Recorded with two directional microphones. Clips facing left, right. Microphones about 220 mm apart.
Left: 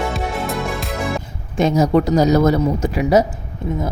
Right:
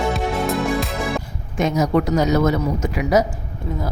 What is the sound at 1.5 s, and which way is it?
A woman's voice, 30° left (ahead or behind).